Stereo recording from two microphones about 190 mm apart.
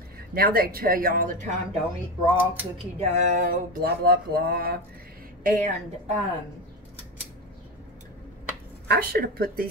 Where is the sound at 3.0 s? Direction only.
35° right (ahead or behind); by 4.8 s 55° right (ahead or behind).